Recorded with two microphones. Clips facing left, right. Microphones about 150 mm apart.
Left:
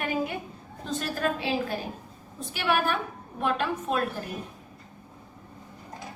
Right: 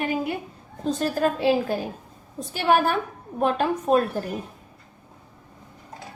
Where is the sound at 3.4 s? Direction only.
40° right (ahead or behind).